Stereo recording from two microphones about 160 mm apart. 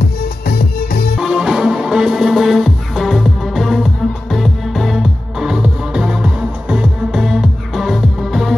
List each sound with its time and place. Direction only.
0.0 s music: 70° left (ahead or behind)
1.1 s music: 5° right (ahead or behind)